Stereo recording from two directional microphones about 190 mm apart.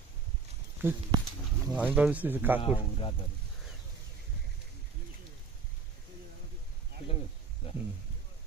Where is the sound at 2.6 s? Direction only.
30° left (ahead or behind).